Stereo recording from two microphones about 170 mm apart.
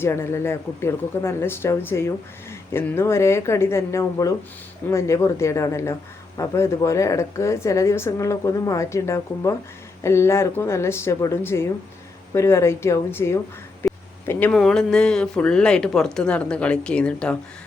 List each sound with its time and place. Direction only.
0.0 s speech: 15° left (ahead or behind)
13.8 s a sound: 15° left (ahead or behind)
14.3 s speech: 10° left (ahead or behind)